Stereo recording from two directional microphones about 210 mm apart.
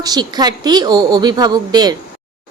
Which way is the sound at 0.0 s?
20° right (ahead or behind).